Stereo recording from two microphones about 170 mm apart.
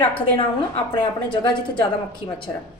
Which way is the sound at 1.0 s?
25° left (ahead or behind).